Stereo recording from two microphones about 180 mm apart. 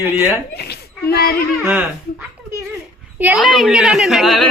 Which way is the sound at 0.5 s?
60° left (ahead or behind).